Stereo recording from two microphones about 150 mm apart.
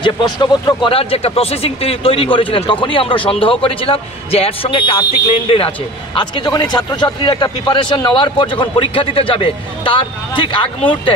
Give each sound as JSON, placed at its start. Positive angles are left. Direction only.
{"t": 0.0, "sound": "speech", "side_deg": 30}